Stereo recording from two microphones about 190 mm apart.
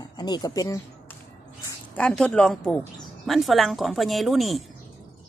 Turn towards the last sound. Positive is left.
turn(degrees=0)  # may be behind; listen again after turning